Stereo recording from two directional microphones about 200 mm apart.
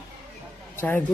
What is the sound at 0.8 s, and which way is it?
Speech, 10° left (ahead or behind).